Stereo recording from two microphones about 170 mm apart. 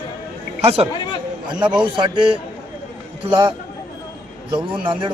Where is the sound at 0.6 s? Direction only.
35° right (ahead or behind).